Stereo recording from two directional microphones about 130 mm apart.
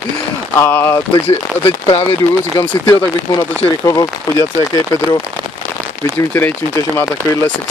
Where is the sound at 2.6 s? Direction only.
30° left (ahead or behind).